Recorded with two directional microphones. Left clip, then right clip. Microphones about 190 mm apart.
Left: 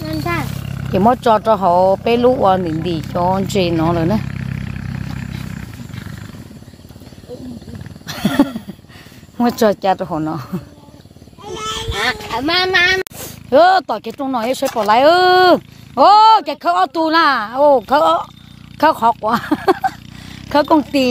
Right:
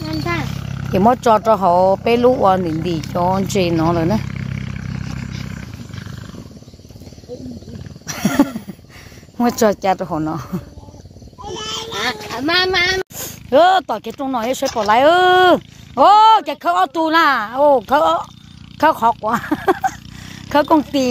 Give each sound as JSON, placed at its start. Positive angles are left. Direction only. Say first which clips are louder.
{"t": 0.2, "sound": "roaring cats", "louder": "left 2 dB", "side_deg": 40}
{"t": 0.9, "sound": "speech", "louder": "even", "side_deg": -5}
{"t": 4.3, "sound": "wild animals", "louder": "left 1 dB", "side_deg": 60}
{"t": 8.1, "sound": "a sound", "louder": "left 1 dB", "side_deg": 0}
{"t": 9.4, "sound": "speech", "louder": "left 1 dB", "side_deg": -5}
{"t": 12.1, "sound": "a sound", "louder": "even", "side_deg": -15}
{"t": 13.1, "sound": "speech", "louder": "left 1 dB", "side_deg": 0}